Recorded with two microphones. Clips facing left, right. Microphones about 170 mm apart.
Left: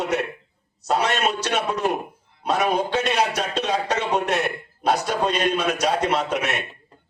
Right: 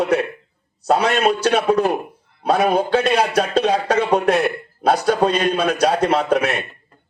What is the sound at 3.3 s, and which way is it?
Speech, 30° right (ahead or behind).